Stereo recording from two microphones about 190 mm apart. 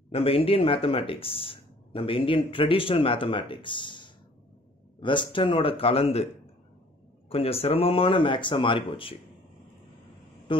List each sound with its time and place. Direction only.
0.1 s speech: 30° left (ahead or behind)
7.2 s speech: 30° left (ahead or behind)
10.5 s a man's voice: 25° left (ahead or behind)